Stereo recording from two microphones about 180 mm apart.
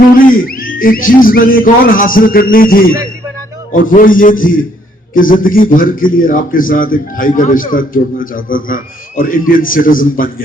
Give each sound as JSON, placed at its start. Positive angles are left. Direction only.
{"t": 0.2, "sound": "a man's voice", "side_deg": 50}